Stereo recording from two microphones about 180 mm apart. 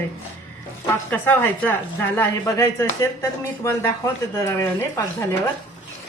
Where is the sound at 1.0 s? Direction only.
10° left (ahead or behind).